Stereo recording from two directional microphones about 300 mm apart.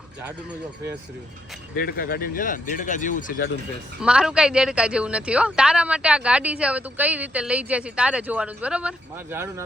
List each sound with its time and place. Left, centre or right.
1.7 s speech: left
4.0 s speech: centre